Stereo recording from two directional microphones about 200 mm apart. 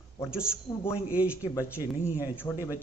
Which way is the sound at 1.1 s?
5° right (ahead or behind).